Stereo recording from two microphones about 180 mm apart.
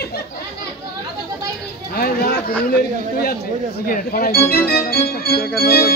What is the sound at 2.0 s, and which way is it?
Speech, 55° left (ahead or behind).